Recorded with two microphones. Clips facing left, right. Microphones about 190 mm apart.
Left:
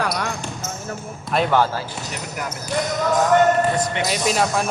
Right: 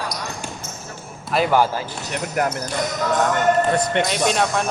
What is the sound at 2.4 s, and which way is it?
Speech, 60° right (ahead or behind).